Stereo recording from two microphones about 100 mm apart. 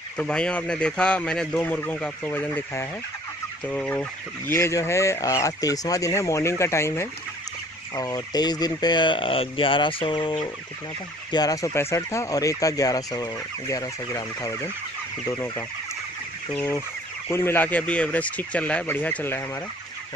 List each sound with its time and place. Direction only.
0.2 s speech: 10° left (ahead or behind)
1.6 s speech: 20° left (ahead or behind)
4.5 s speech: 30° left (ahead or behind)
7.9 s fowl: 40° left (ahead or behind); by 10.5 s 55° left (ahead or behind)
11.3 s speech: 35° left (ahead or behind)
17.3 s speech: 25° left (ahead or behind)